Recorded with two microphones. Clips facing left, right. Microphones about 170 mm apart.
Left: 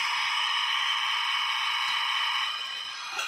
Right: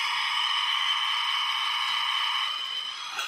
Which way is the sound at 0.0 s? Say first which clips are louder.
Even; 15° left (ahead or behind).